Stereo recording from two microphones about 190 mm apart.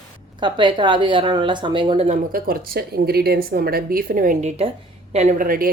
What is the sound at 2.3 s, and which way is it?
Speech, 50° right (ahead or behind).